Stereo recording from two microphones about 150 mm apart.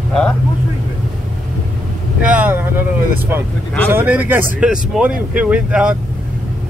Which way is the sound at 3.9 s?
10° right (ahead or behind).